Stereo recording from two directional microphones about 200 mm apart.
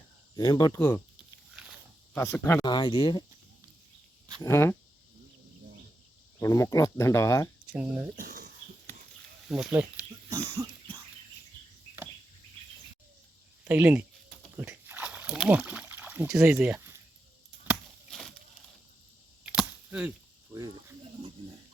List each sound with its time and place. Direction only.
0.3 s speech: 20° left (ahead or behind)
2.1 s speech: 10° left (ahead or behind)
4.4 s speech: 15° left (ahead or behind)
6.4 s speech: 15° left (ahead or behind)
7.8 s speech: 10° right (ahead or behind)
8.1 s a sound: 45° right (ahead or behind)
9.5 s speech: centre (ahead or behind)
10.2 s cough: 15° right (ahead or behind)
13.7 s speech: 10° right (ahead or behind)
14.5 s a sound: 10° right (ahead or behind)
19.5 s a sound: 5° right (ahead or behind)
20.5 s speech: 15° right (ahead or behind)